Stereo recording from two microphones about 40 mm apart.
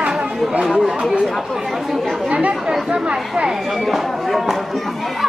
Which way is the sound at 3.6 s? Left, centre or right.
Centre.